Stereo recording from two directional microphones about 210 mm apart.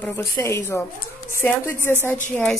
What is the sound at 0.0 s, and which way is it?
Speech, 15° left (ahead or behind).